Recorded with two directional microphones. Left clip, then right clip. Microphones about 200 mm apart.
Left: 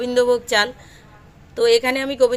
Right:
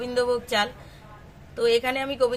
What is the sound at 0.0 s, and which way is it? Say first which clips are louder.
A woman's voice: left 7 dB; 40° left (ahead or behind).